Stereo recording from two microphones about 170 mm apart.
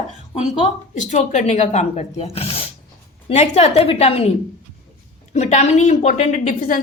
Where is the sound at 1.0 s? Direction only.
45° left (ahead or behind).